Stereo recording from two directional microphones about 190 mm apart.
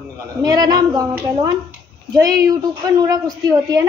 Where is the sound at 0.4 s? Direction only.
20° right (ahead or behind).